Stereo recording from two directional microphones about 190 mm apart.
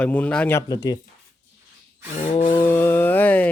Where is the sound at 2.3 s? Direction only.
30° left (ahead or behind).